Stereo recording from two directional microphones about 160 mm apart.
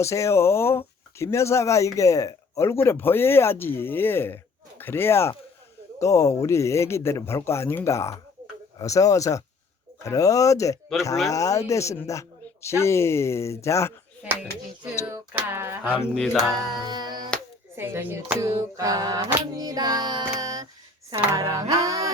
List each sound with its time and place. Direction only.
0.0 s speech: 20° left (ahead or behind)
15.3 s music: 10° right (ahead or behind)
16.1 s music: centre (ahead or behind)
16.7 s music: 25° right (ahead or behind)
17.7 s a sound: 15° right (ahead or behind)